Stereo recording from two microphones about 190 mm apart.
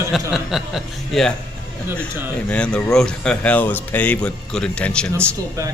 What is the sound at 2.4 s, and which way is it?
A man's voice, 5° left (ahead or behind).